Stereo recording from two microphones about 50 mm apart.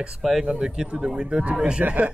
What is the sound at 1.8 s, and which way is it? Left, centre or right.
Speech, right.